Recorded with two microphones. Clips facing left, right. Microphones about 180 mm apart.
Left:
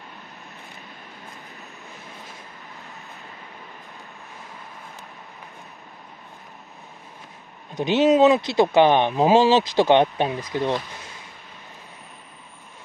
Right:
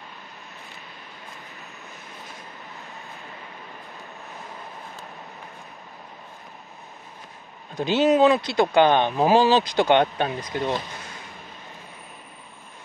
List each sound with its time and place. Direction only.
7.7 s speech: 20° left (ahead or behind)